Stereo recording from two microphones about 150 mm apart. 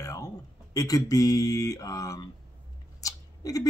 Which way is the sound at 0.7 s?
25° left (ahead or behind).